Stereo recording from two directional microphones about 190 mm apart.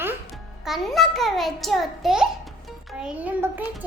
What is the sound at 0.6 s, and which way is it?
A child's voice, centre (ahead or behind).